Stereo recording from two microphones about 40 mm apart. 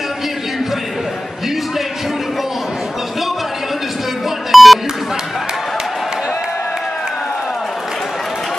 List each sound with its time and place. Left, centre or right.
4.5 s beep: centre